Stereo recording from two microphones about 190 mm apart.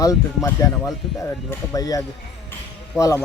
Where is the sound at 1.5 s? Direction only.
20° left (ahead or behind).